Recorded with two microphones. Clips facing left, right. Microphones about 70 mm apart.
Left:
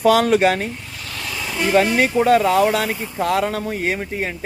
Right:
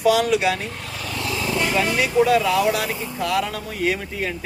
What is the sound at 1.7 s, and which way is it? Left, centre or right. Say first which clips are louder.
Speech: left 4 dB; left.